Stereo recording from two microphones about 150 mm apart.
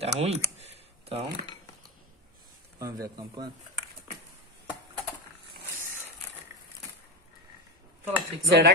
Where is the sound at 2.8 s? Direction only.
20° right (ahead or behind).